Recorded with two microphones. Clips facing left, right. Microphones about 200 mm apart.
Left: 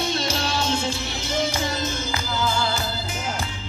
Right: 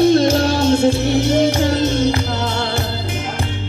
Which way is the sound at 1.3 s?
75° right (ahead or behind).